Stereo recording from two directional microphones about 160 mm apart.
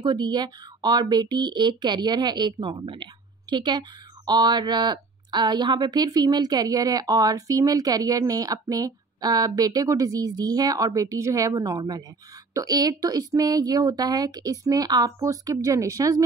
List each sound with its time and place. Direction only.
0.0 s a woman's voice: 25° right (ahead or behind)